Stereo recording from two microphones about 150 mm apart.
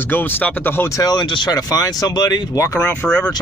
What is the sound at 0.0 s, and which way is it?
Speech, 15° left (ahead or behind).